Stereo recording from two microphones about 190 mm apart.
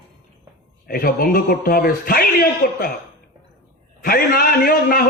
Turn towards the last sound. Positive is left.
turn(degrees=50)  # may be behind; listen again after turning